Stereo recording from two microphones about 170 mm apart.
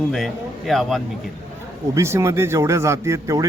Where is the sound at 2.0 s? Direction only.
15° right (ahead or behind).